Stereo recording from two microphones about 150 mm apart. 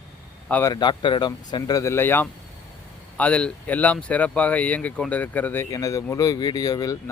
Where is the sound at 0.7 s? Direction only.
30° left (ahead or behind).